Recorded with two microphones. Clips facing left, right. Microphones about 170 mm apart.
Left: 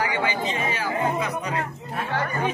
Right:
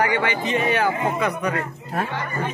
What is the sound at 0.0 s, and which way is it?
Speech, 65° right (ahead or behind).